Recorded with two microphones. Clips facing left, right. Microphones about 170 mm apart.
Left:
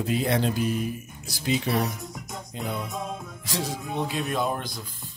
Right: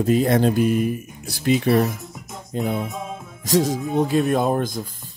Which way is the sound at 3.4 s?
40° right (ahead or behind).